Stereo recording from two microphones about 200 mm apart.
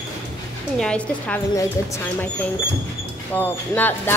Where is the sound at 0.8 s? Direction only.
5° left (ahead or behind).